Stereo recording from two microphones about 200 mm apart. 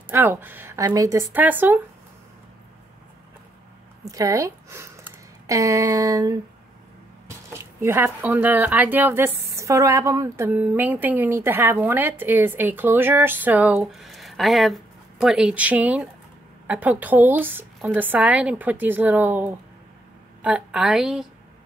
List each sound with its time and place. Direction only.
0.1 s speech: 10° right (ahead or behind)
4.0 s a woman's voice: 15° right (ahead or behind); by 21.3 s centre (ahead or behind)